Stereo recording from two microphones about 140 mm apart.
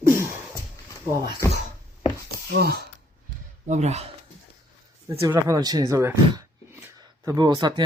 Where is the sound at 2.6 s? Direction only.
90° right.